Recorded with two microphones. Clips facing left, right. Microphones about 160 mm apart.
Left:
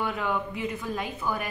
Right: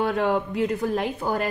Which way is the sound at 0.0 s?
65° right (ahead or behind).